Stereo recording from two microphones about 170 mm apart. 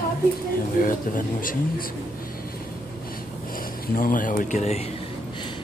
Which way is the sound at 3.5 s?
55° left (ahead or behind).